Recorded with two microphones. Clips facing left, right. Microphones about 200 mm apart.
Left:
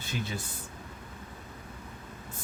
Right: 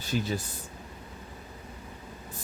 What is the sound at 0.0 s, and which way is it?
Speech, 40° right (ahead or behind).